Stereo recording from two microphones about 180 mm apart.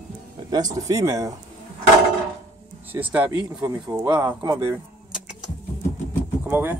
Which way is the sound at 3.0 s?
15° right (ahead or behind).